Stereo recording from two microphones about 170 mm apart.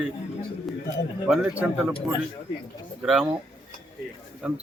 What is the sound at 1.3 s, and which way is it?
Speech, 5° right (ahead or behind).